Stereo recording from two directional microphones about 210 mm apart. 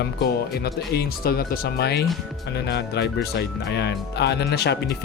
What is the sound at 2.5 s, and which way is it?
Speech, 50° left (ahead or behind).